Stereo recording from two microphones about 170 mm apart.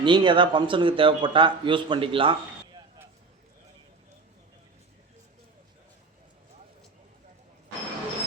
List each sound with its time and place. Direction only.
0.0 s a man's voice: 30° right (ahead or behind)